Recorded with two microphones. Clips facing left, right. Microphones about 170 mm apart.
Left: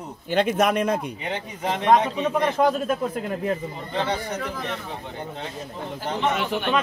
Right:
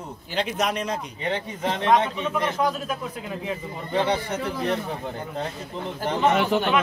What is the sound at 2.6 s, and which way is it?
Speech, 50° left (ahead or behind).